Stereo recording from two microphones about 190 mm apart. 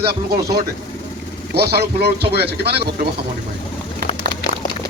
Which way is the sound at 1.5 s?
60° right (ahead or behind).